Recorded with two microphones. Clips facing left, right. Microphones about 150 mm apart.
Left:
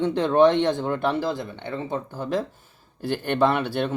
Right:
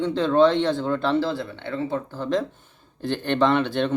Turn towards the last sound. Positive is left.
turn(degrees=10)  # may be behind; listen again after turning